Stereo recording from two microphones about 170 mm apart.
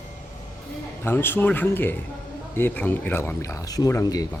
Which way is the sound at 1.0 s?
15° left (ahead or behind).